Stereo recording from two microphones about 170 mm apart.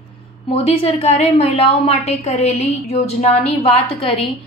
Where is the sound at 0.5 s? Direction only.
35° left (ahead or behind).